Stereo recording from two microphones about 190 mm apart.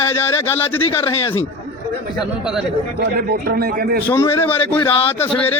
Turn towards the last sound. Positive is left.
turn(degrees=10)  # may be behind; listen again after turning